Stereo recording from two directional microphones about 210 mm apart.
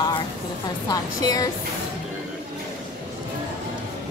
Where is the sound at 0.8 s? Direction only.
20° left (ahead or behind).